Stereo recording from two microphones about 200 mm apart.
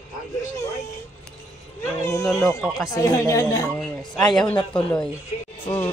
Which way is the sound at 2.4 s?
Centre (ahead or behind).